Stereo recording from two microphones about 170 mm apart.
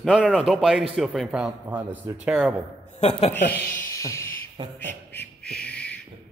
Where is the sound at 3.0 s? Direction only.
35° left (ahead or behind).